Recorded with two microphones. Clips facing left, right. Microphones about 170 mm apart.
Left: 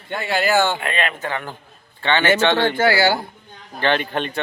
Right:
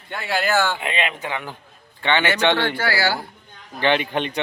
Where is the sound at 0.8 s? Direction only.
15° right (ahead or behind).